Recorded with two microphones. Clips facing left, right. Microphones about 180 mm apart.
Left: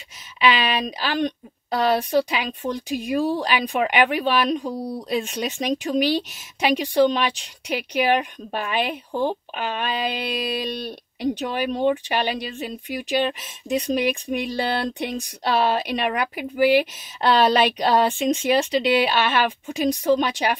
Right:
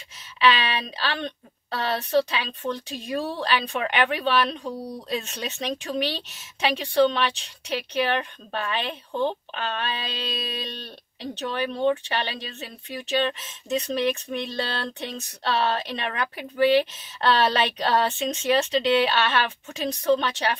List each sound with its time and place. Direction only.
0.4 s speech: 15° left (ahead or behind)